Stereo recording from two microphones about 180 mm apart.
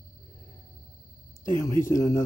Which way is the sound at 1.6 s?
15° left (ahead or behind).